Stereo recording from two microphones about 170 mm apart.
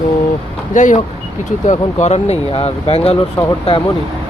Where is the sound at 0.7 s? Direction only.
50° left (ahead or behind).